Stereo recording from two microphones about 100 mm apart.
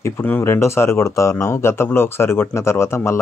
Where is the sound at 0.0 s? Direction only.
20° left (ahead or behind).